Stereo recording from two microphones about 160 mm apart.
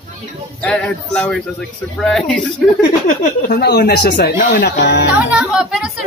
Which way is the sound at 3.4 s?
80° left.